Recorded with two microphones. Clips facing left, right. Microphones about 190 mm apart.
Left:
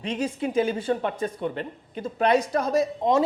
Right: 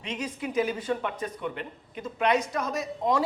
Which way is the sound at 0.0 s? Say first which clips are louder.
Left 6 dB; 30° left (ahead or behind).